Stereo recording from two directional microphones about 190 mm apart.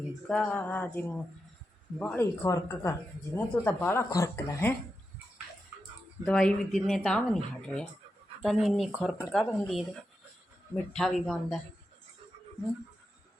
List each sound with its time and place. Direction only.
0.3 s speech: 5° left (ahead or behind)
6.2 s speech: 5° left (ahead or behind)
10.9 s speech: centre (ahead or behind)